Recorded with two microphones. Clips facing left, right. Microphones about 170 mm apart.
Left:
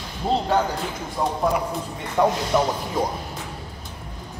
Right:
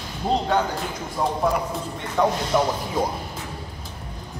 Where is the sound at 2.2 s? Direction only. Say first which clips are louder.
Left 1 dB; 10° left (ahead or behind).